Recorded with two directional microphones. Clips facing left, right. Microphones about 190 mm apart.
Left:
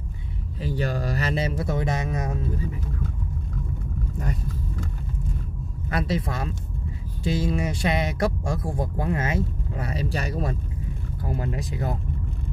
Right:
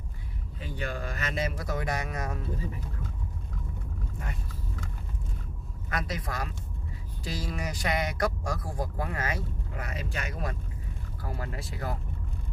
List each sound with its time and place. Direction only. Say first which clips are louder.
0.6 s speech: left 8 dB; 35° left (ahead or behind); by 2.4 s 20° left (ahead or behind)
4.2 s speech: left 9 dB; 40° left (ahead or behind)
5.9 s speech: left 7 dB; 30° left (ahead or behind)